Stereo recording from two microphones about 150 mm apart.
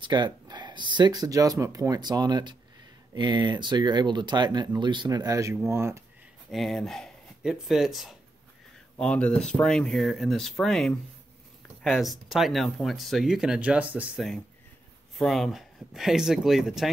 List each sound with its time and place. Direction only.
0.0 s speech: 30° right (ahead or behind)
6.5 s speech: centre (ahead or behind)